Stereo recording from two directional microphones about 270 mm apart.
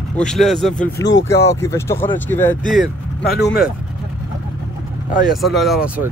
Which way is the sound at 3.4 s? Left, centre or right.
Left.